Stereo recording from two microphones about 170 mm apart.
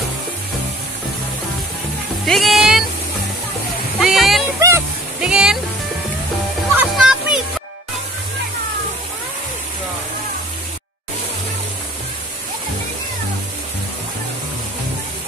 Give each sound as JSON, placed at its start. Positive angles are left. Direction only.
{"t": 2.2, "sound": "speech", "side_deg": 0}
{"t": 4.0, "sound": "speech", "side_deg": 0}
{"t": 4.6, "sound": "speech", "side_deg": -15}
{"t": 5.2, "sound": "speech", "side_deg": -5}
{"t": 6.8, "sound": "a child's voice", "side_deg": -5}